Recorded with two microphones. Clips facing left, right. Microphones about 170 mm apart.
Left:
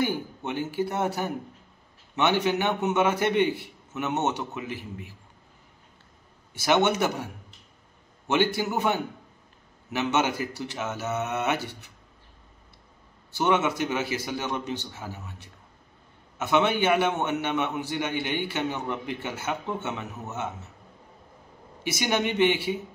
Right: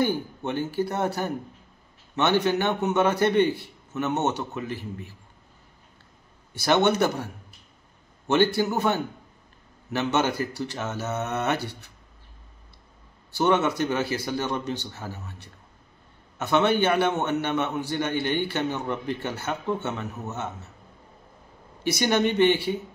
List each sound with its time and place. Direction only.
0.0 s a man's voice: 15° left (ahead or behind)
6.6 s a man's voice: 15° left (ahead or behind)
8.7 s a man's voice: 15° left (ahead or behind)
13.4 s a man's voice: 15° left (ahead or behind)
16.3 s a man's voice: 15° left (ahead or behind)
22.0 s a man's voice: 15° left (ahead or behind)